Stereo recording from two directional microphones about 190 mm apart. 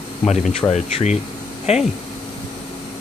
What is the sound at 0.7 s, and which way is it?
Speech, 35° left (ahead or behind).